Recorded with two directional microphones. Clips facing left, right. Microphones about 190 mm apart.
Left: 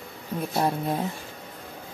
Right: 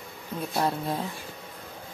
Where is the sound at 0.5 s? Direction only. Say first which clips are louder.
Left 2 dB; 15° left (ahead or behind).